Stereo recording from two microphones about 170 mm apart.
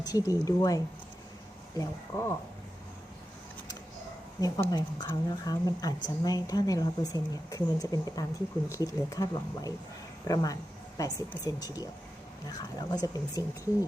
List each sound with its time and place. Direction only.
0.0 s speech: 20° left (ahead or behind)
1.8 s speech: 15° left (ahead or behind)
4.4 s speech: 20° left (ahead or behind)